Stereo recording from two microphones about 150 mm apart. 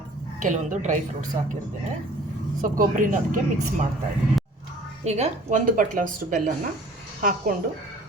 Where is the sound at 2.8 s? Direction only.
65° right (ahead or behind).